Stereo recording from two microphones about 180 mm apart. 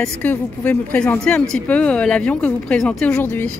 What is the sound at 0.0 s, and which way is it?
A woman's voice, 10° left (ahead or behind).